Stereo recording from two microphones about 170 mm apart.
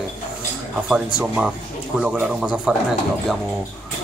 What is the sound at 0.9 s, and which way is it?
A man's voice, 5° right (ahead or behind).